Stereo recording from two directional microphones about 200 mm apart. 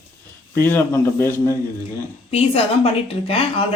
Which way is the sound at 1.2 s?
10° left (ahead or behind).